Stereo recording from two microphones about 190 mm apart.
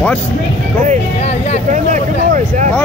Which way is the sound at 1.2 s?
35° left (ahead or behind).